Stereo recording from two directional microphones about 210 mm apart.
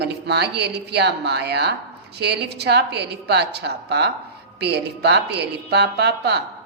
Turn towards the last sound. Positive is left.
turn(degrees=-50)  # may be behind; listen again after turning